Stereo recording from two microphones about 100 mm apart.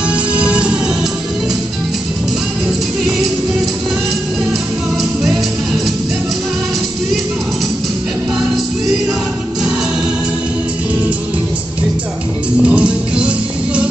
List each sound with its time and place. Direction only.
0.1 s music: 10° right (ahead or behind)
5.2 s music: centre (ahead or behind)
12.6 s music: 10° right (ahead or behind)